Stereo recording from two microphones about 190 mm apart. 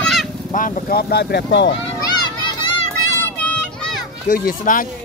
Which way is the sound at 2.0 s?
20° left (ahead or behind).